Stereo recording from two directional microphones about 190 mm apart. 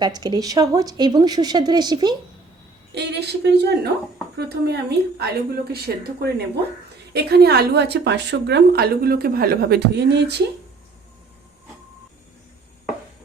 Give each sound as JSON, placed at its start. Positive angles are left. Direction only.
{"t": 0.0, "sound": "speech", "side_deg": -20}
{"t": 2.9, "sound": "a woman's voice", "side_deg": -60}